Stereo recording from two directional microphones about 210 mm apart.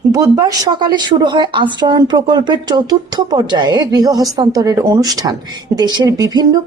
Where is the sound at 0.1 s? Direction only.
15° right (ahead or behind).